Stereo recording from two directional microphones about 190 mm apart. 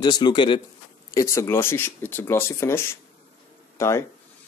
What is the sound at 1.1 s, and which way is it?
Speech, 15° left (ahead or behind).